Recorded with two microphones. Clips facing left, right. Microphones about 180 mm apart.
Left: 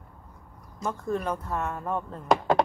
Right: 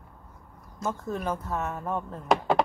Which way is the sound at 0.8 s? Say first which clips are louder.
Left 2 dB; 5° right (ahead or behind).